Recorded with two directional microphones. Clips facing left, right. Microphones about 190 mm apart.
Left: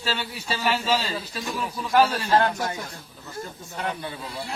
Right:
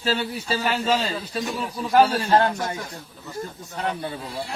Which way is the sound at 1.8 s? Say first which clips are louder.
Right 3 dB; 35° right (ahead or behind).